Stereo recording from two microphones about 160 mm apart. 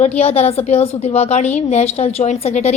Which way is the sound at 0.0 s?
40° left (ahead or behind).